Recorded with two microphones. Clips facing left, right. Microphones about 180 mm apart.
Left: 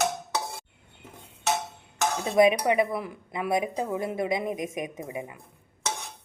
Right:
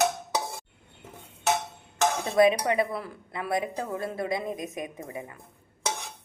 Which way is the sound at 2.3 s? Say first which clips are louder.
Left 2 dB; 15° left (ahead or behind).